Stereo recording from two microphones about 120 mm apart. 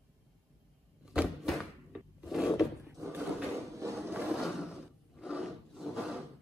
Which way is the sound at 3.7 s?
25° right (ahead or behind).